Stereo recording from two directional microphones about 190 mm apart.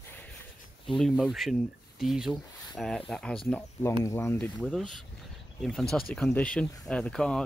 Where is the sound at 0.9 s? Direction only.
Centre (ahead or behind).